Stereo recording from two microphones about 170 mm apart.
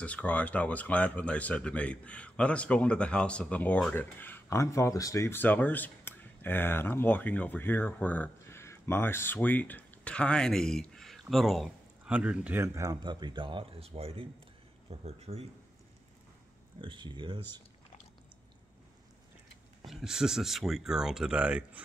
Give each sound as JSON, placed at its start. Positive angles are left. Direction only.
{"t": 0.0, "sound": "speech", "side_deg": 10}
{"t": 16.8, "sound": "speech", "side_deg": -30}
{"t": 19.8, "sound": "speech", "side_deg": 0}